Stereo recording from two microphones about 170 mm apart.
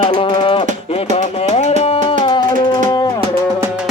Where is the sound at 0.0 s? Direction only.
30° left (ahead or behind).